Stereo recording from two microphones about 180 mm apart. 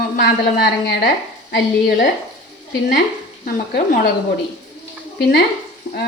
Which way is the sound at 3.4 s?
55° left (ahead or behind).